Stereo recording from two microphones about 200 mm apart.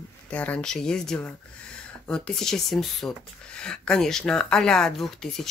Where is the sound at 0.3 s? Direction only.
5° left (ahead or behind).